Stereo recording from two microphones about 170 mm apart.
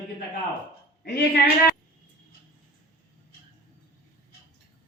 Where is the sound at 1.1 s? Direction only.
70° left (ahead or behind).